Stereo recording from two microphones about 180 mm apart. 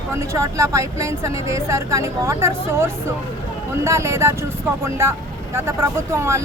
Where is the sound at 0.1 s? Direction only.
15° right (ahead or behind).